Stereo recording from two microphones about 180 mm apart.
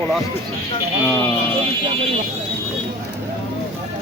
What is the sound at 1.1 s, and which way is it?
Speech, 10° left (ahead or behind).